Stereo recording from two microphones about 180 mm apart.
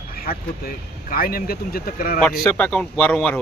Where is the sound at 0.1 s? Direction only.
55° left (ahead or behind).